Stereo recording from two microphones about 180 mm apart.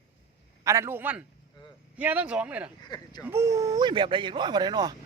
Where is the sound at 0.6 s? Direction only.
15° right (ahead or behind).